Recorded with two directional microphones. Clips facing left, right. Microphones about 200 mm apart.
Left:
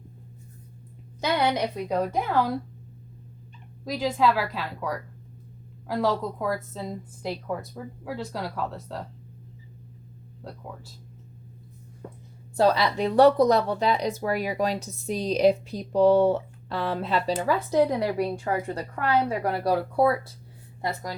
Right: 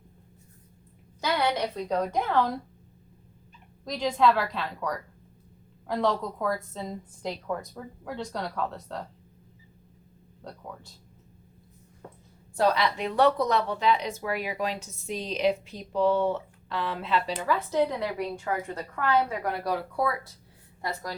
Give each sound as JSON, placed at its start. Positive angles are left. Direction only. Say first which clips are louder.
{"t": 1.2, "sound": "a woman's voice", "louder": "left 2 dB", "side_deg": 15}
{"t": 3.8, "sound": "a woman's voice", "louder": "even", "side_deg": 5}
{"t": 10.4, "sound": "speech", "louder": "left 2 dB", "side_deg": 5}
{"t": 12.5, "sound": "speech", "louder": "left 3 dB", "side_deg": 30}
{"t": 20.8, "sound": "a woman's voice", "louder": "left 3 dB", "side_deg": 20}